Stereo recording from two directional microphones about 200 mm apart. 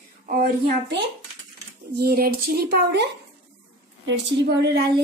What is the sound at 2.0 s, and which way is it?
A woman's voice, 50° right (ahead or behind).